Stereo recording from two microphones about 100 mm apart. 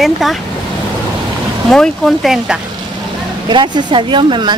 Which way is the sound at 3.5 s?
50° right (ahead or behind).